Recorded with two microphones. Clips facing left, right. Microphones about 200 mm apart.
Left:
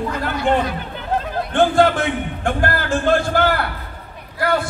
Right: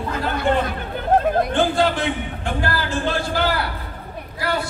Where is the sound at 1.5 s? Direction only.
50° left (ahead or behind).